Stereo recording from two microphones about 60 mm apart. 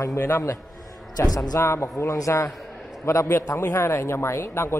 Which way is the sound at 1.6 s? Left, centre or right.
Left.